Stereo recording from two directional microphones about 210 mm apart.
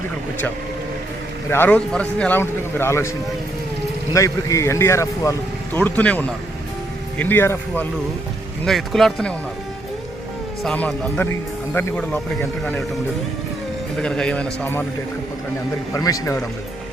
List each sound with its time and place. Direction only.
1.5 s speech: 10° left (ahead or behind)
4.1 s speech: 15° left (ahead or behind)
10.6 s speech: 5° left (ahead or behind)
14.0 s speech: 5° left (ahead or behind)
15.9 s speech: 15° left (ahead or behind)